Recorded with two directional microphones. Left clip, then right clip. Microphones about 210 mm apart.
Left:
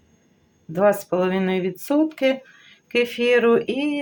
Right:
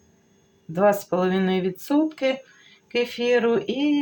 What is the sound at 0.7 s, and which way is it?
Speech, 5° left (ahead or behind).